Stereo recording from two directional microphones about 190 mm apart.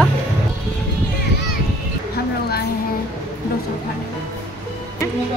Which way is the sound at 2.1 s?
55° left (ahead or behind).